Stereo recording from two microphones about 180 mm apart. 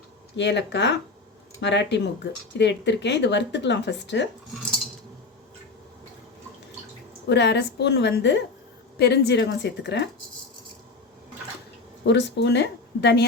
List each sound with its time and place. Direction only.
0.3 s speech: 75° left (ahead or behind)
7.3 s speech: 70° left (ahead or behind)
12.0 s speech: 75° left (ahead or behind)